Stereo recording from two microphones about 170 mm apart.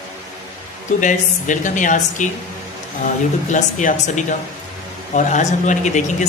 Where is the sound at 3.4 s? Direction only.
45° left (ahead or behind).